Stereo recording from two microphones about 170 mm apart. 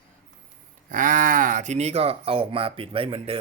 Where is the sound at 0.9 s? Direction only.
50° right (ahead or behind); by 3.4 s 30° right (ahead or behind).